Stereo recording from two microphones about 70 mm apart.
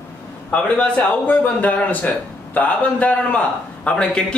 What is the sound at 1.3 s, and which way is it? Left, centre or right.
A man's voice, left.